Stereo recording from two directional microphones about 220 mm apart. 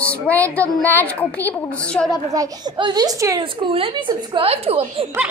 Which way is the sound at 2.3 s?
15° right (ahead or behind).